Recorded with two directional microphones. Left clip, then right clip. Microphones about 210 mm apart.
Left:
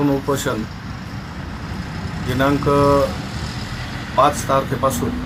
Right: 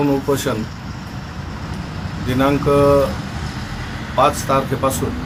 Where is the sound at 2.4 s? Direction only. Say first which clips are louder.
Right 1 dB; 15° right (ahead or behind).